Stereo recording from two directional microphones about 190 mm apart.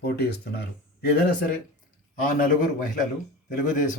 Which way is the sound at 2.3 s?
45° left (ahead or behind).